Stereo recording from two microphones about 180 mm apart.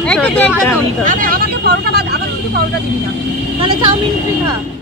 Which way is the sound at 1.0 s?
50° right (ahead or behind).